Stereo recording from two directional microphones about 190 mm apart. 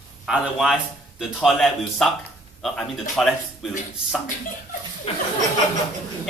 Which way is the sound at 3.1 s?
Centre (ahead or behind).